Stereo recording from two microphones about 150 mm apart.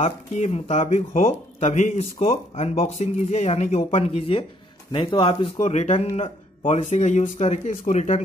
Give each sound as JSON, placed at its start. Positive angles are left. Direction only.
{"t": 0.0, "sound": "speech", "side_deg": 45}